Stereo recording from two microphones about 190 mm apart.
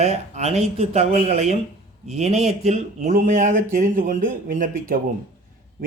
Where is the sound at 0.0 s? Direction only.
35° right (ahead or behind).